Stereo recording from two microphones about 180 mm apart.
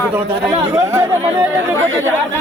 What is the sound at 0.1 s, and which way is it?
Speech, 15° right (ahead or behind).